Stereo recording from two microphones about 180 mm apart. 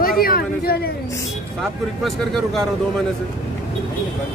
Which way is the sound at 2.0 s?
Centre (ahead or behind).